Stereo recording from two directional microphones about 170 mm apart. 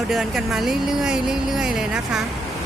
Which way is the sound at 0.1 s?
Centre (ahead or behind).